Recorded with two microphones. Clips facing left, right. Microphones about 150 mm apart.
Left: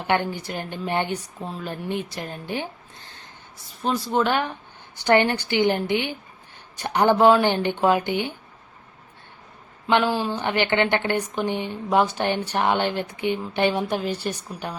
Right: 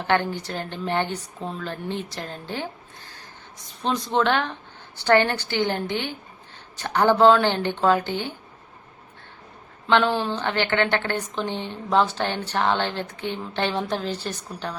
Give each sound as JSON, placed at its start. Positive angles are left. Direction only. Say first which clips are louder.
{"t": 0.0, "sound": "a woman's voice", "louder": "right 1 dB", "side_deg": 15}
{"t": 3.8, "sound": "a woman's voice", "louder": "even", "side_deg": 5}
{"t": 9.8, "sound": "a woman's voice", "louder": "even", "side_deg": 5}